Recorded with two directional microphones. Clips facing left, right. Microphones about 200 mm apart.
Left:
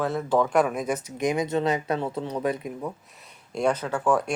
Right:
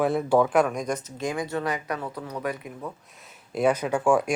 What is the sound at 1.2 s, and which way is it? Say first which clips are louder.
Speech: left 7 dB; 20° left (ahead or behind).